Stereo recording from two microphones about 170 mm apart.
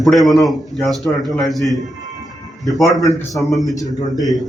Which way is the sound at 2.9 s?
20° left (ahead or behind).